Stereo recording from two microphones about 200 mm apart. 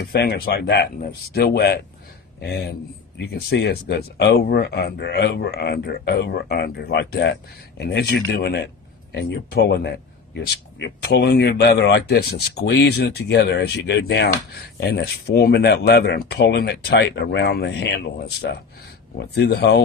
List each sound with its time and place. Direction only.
0.0 s speech: 55° left (ahead or behind)